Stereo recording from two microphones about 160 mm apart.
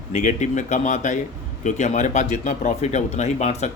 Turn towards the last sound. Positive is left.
turn(degrees=45)  # may be behind; listen again after turning